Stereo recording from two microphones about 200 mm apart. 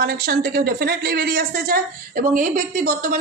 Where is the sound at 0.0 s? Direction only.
50° right (ahead or behind).